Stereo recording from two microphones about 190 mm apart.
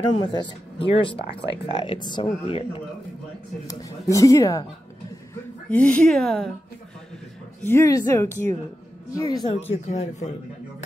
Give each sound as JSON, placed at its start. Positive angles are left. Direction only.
{"t": 0.1, "sound": "speech", "side_deg": 25}
{"t": 3.6, "sound": "speech", "side_deg": 15}
{"t": 5.7, "sound": "speech", "side_deg": 5}
{"t": 7.6, "sound": "speech", "side_deg": 15}
{"t": 9.7, "sound": "speech", "side_deg": 35}